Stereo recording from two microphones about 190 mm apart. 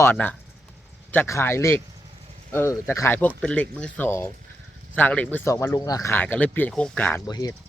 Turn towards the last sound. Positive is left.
turn(degrees=20)  # may be behind; listen again after turning